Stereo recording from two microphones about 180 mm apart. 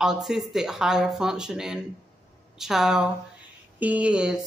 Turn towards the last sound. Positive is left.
turn(degrees=-5)  # may be behind; listen again after turning